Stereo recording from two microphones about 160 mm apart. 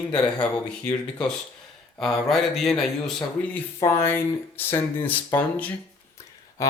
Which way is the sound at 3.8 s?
15° left (ahead or behind).